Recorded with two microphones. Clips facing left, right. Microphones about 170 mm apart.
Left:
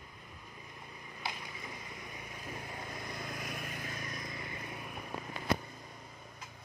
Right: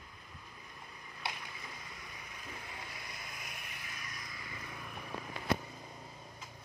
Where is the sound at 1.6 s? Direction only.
30° left (ahead or behind).